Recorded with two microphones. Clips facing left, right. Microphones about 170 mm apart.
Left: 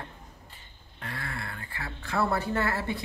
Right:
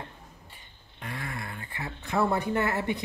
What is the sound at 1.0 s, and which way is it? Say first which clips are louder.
A woman's voice: right 1 dB; 15° right (ahead or behind).